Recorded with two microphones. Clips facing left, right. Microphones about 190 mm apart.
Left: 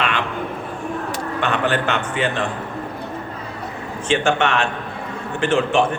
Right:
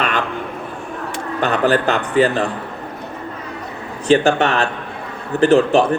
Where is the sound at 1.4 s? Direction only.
35° right (ahead or behind).